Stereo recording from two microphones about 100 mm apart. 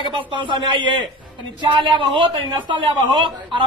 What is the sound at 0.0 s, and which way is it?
Speech, 55° right (ahead or behind).